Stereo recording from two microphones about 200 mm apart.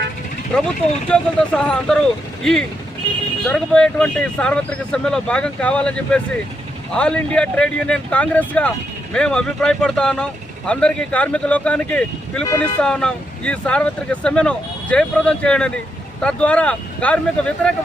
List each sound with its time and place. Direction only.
0.5 s speech: 5° left (ahead or behind)